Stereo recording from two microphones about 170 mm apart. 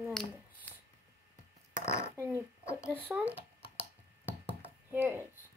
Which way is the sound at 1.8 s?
15° left (ahead or behind).